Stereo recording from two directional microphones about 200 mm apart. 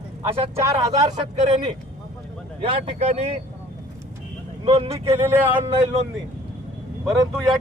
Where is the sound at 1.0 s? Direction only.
30° right (ahead or behind).